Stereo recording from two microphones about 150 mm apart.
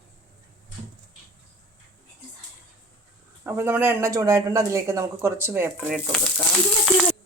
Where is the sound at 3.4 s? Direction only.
15° right (ahead or behind).